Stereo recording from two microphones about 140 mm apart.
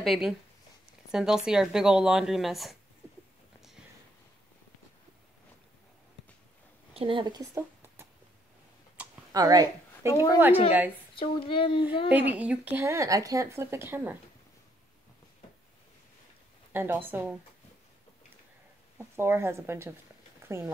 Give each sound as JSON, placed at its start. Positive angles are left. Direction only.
{"t": 0.0, "sound": "speech", "side_deg": 0}
{"t": 6.9, "sound": "a woman's voice", "side_deg": -40}
{"t": 9.0, "sound": "a sound", "side_deg": -10}
{"t": 9.3, "sound": "speech", "side_deg": -25}
{"t": 10.1, "sound": "a woman's voice", "side_deg": 25}
{"t": 11.1, "sound": "a child's voice", "side_deg": 40}
{"t": 12.1, "sound": "speech", "side_deg": -10}
{"t": 16.7, "sound": "speech", "side_deg": -15}
{"t": 18.9, "sound": "speech", "side_deg": -15}